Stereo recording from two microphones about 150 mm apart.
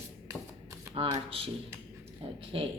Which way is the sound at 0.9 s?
40° right (ahead or behind).